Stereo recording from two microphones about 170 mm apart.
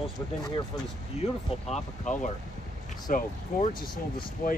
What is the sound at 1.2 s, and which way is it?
Speech, 40° left (ahead or behind).